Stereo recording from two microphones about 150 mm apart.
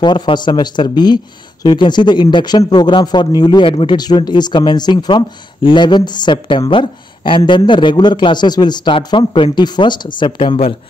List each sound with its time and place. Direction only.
0.0 s speech: 30° left (ahead or behind)